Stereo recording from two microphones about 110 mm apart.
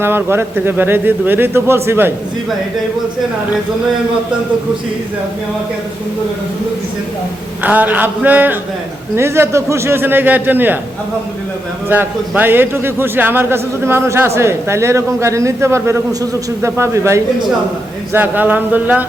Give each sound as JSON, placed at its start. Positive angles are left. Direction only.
{"t": 0.0, "sound": "a man's voice", "side_deg": -20}
{"t": 7.6, "sound": "a man's voice", "side_deg": -15}
{"t": 11.9, "sound": "a man's voice", "side_deg": -15}